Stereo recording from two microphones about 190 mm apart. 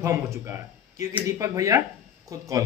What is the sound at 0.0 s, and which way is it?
A man's voice, 15° right (ahead or behind).